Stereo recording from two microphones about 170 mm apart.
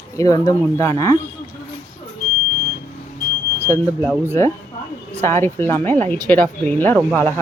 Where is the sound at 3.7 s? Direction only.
15° left (ahead or behind).